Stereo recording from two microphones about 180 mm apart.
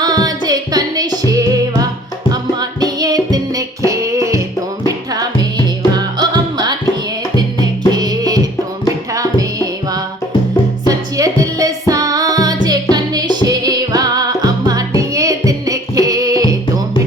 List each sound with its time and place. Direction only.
0.0 s music: 20° right (ahead or behind)